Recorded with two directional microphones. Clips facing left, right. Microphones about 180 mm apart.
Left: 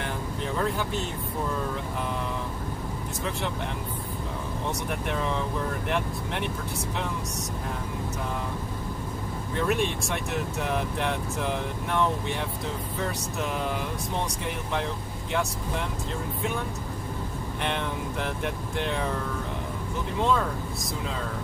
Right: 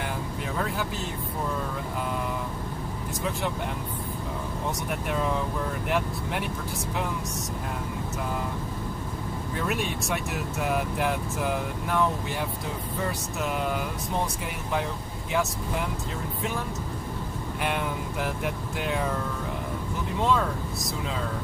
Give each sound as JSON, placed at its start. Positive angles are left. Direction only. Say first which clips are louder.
{"t": 5.9, "sound": "speech", "louder": "right 1 dB", "side_deg": -5}
{"t": 9.6, "sound": "speech", "louder": "left 4 dB", "side_deg": -5}
{"t": 17.6, "sound": "speech", "louder": "right 1 dB", "side_deg": -5}